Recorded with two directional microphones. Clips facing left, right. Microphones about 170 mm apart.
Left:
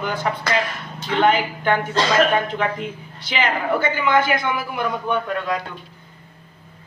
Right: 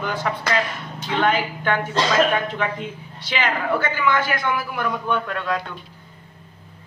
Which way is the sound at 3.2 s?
15° left (ahead or behind).